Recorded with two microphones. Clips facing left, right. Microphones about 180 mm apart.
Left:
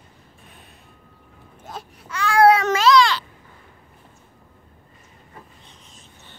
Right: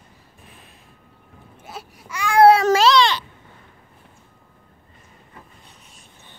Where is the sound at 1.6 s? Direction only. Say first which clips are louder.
Left 1 dB; 10° right (ahead or behind).